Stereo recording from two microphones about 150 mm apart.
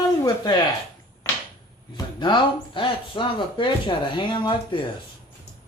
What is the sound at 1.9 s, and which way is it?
A man's voice, 30° left (ahead or behind).